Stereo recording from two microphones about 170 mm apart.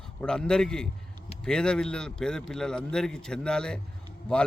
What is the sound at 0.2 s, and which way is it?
A man's voice, 5° left (ahead or behind).